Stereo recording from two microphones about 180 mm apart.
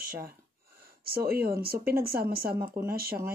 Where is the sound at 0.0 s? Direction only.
55° right (ahead or behind).